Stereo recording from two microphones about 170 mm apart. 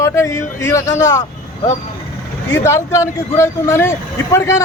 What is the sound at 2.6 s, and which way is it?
Speech, 15° left (ahead or behind).